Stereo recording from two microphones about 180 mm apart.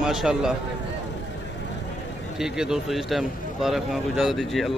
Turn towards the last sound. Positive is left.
turn(degrees=0)  # may be behind; listen again after turning